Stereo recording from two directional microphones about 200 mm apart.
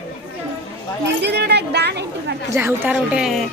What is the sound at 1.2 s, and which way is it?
Speech, 55° right (ahead or behind).